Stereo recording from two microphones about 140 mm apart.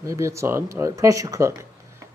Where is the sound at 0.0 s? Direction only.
20° right (ahead or behind).